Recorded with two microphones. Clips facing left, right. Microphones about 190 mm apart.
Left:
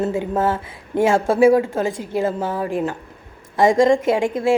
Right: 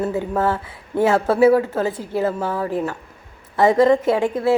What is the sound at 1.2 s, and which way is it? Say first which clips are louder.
A woman's voice: left 1 dB; 10° left (ahead or behind).